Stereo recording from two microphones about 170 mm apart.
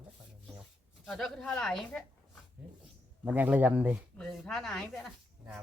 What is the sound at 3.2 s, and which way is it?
Speech, 10° right (ahead or behind).